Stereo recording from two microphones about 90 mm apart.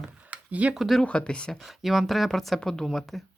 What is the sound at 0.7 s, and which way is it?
Speech, centre (ahead or behind).